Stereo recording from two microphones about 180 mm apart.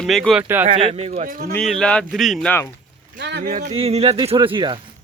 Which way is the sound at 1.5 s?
5° left (ahead or behind).